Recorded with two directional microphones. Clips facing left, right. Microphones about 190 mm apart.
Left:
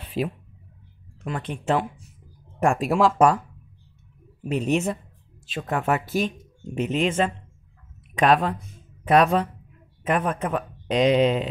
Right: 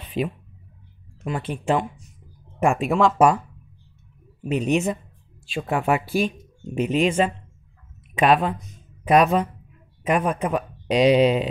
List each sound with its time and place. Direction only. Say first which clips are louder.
0.2 s speech: right 1 dB; centre (ahead or behind)
3.2 s speech: right 1 dB; 5° right (ahead or behind)
5.5 s speech: right 2 dB; 10° right (ahead or behind)